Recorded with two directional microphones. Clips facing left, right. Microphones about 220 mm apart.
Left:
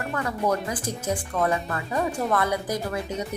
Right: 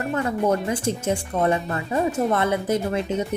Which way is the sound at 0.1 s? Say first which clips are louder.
Right 4 dB; 25° right (ahead or behind).